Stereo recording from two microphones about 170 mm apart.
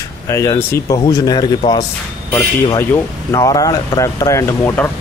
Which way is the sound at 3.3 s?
20° left (ahead or behind).